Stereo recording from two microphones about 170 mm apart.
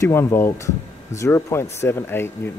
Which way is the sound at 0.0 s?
15° left (ahead or behind).